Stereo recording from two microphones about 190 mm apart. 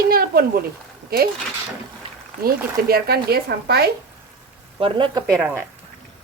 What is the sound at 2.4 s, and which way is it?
Speech, 55° right (ahead or behind).